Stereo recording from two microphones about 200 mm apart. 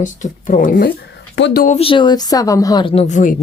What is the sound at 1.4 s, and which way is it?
Speech, 60° left (ahead or behind).